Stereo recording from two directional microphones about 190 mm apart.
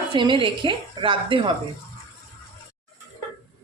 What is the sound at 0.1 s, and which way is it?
A woman's voice, 25° right (ahead or behind).